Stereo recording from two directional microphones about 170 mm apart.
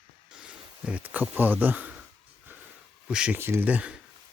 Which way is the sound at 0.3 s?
5° right (ahead or behind).